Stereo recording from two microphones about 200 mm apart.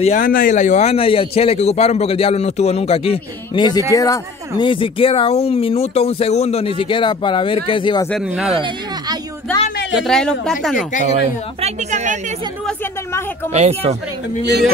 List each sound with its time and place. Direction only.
0.0 s speech: 40° left (ahead or behind); by 8.1 s 25° left (ahead or behind)
8.1 s speech: 5° right (ahead or behind)
8.5 s a sound: 25° right (ahead or behind)
9.9 s speech: 5° left (ahead or behind)
11.1 s a woman's voice: 35° right (ahead or behind)
13.5 s a woman's voice: 35° right (ahead or behind)